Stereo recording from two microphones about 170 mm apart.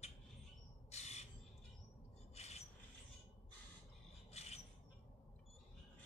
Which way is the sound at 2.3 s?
40° left (ahead or behind).